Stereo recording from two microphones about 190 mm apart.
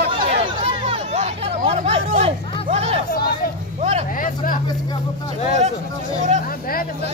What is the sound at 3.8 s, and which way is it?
Vehicle, 35° right (ahead or behind).